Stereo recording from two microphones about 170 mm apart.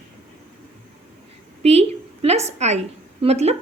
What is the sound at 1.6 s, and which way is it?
A woman's voice, 40° right (ahead or behind).